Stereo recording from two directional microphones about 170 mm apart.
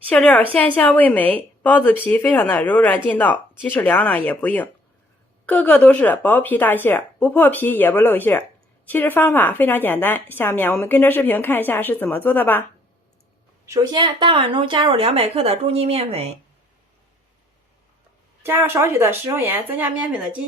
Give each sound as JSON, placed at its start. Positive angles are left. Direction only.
{"t": 0.1, "sound": "a woman's voice", "side_deg": 5}
{"t": 13.7, "sound": "a woman's voice", "side_deg": -25}
{"t": 18.4, "sound": "speech", "side_deg": -15}